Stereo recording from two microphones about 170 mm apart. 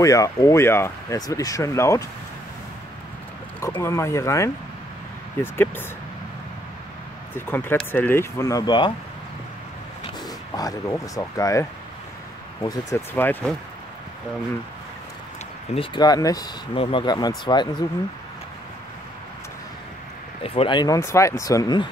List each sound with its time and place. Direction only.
0.0 s speech: 20° left (ahead or behind)
3.6 s speech: 15° left (ahead or behind)
7.3 s speech: 10° left (ahead or behind)
10.0 s speech: 20° left (ahead or behind)
12.6 s speech: 15° left (ahead or behind)
15.7 s speech: 30° left (ahead or behind)
20.4 s speech: 30° left (ahead or behind)